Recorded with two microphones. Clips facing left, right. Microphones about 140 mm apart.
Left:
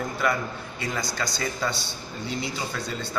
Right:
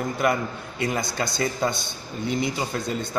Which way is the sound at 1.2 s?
55° right (ahead or behind).